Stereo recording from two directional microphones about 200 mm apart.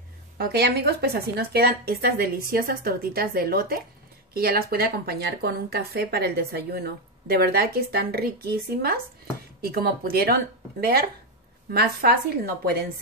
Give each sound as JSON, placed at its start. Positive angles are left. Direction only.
{"t": 0.4, "sound": "speech", "side_deg": -55}